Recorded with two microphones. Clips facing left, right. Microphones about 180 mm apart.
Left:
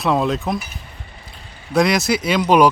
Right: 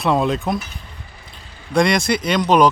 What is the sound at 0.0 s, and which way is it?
Speech, centre (ahead or behind).